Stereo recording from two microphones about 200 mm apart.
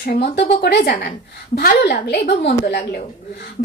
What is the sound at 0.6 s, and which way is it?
A woman's voice, 55° left (ahead or behind).